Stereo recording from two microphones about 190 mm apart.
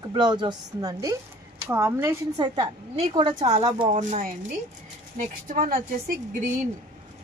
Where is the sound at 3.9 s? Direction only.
35° right (ahead or behind).